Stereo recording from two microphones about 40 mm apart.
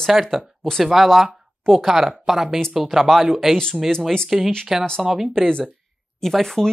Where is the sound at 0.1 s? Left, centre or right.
Centre.